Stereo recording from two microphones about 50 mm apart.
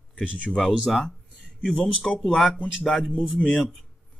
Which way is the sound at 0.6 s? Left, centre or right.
Centre.